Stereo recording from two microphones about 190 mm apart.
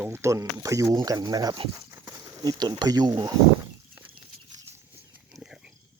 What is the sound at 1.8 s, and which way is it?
Horse, 10° right (ahead or behind).